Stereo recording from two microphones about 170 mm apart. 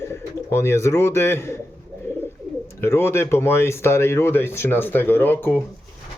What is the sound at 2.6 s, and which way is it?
Speech, 15° left (ahead or behind).